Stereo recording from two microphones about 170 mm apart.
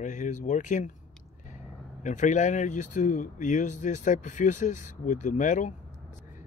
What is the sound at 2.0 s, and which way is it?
Speech, 45° left (ahead or behind).